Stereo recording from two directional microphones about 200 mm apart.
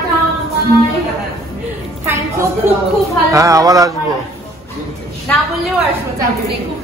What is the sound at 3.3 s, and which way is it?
Speech, 15° right (ahead or behind).